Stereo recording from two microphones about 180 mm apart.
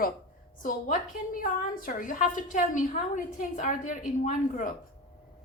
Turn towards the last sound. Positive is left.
turn(degrees=45)  # may be behind; listen again after turning